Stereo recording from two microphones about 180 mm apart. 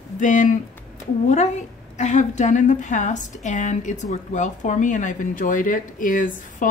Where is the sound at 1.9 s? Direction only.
40° left (ahead or behind).